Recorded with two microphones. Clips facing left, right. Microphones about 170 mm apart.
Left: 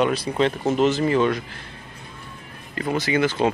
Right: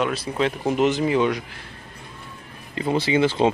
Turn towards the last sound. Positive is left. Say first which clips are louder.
# right 2 dB
turn(degrees=-25)  # may be behind; listen again after turning